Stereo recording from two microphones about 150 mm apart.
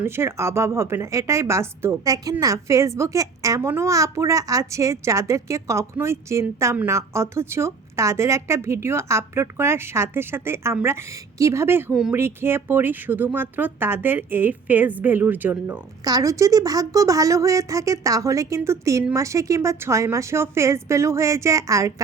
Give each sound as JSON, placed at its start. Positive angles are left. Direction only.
{"t": 0.0, "sound": "a woman's voice", "side_deg": -15}
{"t": 16.0, "sound": "a woman's voice", "side_deg": -25}